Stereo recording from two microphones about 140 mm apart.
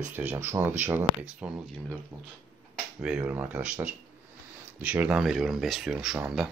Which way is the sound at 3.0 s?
5° right (ahead or behind).